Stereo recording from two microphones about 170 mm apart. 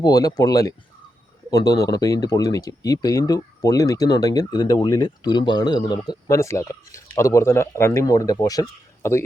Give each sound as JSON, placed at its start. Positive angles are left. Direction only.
{"t": 0.0, "sound": "speech", "side_deg": 20}